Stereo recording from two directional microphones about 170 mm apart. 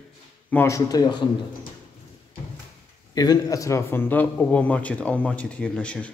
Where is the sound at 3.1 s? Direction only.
20° left (ahead or behind); by 6.1 s 5° left (ahead or behind).